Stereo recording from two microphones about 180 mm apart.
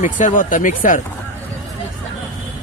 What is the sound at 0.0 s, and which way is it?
Speech, 45° left (ahead or behind).